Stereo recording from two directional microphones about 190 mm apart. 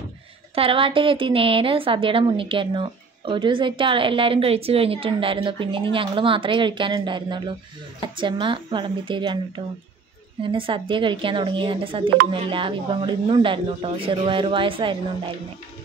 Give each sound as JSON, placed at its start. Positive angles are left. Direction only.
{"t": 0.6, "sound": "a woman's voice", "side_deg": -30}
{"t": 10.4, "sound": "a woman's voice", "side_deg": -25}